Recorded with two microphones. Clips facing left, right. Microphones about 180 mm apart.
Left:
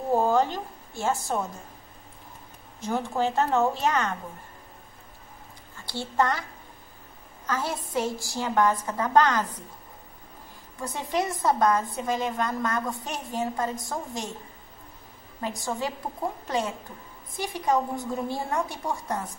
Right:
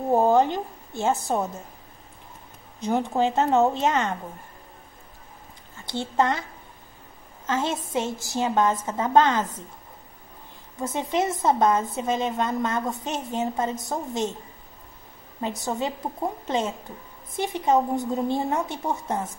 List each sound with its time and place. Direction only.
0.1 s a woman's voice: 20° right (ahead or behind)
2.8 s a woman's voice: 20° right (ahead or behind)
5.9 s a woman's voice: 20° right (ahead or behind)
7.4 s a woman's voice: 25° right (ahead or behind)
10.8 s a woman's voice: 20° right (ahead or behind)
15.4 s a woman's voice: 20° right (ahead or behind)